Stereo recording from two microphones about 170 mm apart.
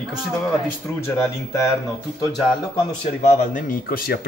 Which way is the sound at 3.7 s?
60° left (ahead or behind).